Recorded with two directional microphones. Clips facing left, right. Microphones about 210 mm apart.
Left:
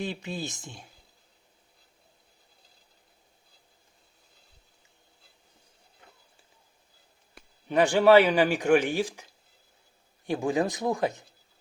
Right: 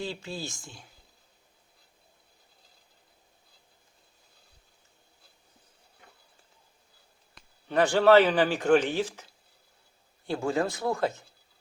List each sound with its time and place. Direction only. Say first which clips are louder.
0.0 s speech: left 2 dB; 20° left (ahead or behind)
7.7 s speech: left 1 dB; 15° left (ahead or behind)